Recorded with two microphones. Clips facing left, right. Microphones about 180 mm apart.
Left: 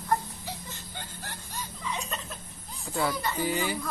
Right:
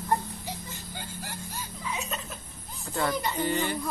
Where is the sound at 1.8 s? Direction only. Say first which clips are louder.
Right 1 dB; 5° right (ahead or behind).